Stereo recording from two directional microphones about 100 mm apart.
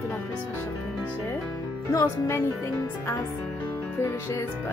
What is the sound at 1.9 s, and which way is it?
Speech, 30° left (ahead or behind).